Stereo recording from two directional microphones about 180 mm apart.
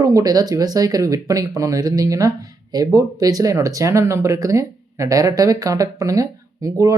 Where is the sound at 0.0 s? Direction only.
20° right (ahead or behind).